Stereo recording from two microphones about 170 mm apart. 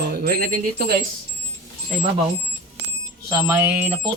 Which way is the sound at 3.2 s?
15° right (ahead or behind).